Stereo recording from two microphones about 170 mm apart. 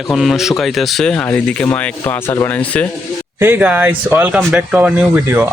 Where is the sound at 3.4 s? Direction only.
10° right (ahead or behind).